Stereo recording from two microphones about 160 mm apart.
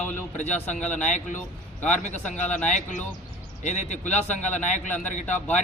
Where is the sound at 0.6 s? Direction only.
10° left (ahead or behind).